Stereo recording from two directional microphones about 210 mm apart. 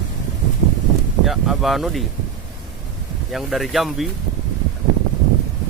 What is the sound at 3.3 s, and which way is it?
Speech, centre (ahead or behind).